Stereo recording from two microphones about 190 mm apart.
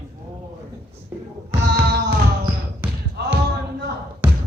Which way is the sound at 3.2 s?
60° right (ahead or behind).